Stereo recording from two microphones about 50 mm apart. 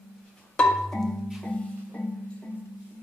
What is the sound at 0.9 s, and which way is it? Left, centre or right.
Music, centre.